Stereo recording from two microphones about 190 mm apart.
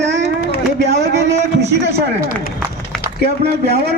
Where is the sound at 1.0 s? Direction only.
60° right (ahead or behind).